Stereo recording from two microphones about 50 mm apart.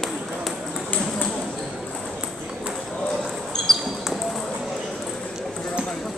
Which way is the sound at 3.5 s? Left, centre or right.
Centre.